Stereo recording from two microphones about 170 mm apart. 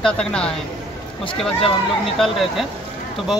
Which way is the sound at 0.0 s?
5° left (ahead or behind).